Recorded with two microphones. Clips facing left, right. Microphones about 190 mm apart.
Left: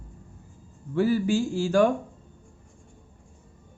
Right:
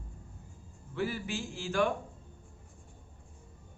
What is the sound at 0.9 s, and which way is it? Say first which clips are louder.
Speech: left 12 dB; 40° left (ahead or behind).